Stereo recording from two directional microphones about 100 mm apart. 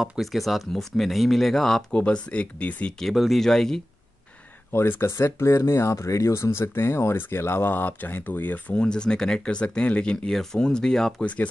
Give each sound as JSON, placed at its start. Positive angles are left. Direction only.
{"t": 0.0, "sound": "speech", "side_deg": 0}
{"t": 3.1, "sound": "speech", "side_deg": 0}
{"t": 4.7, "sound": "speech", "side_deg": 25}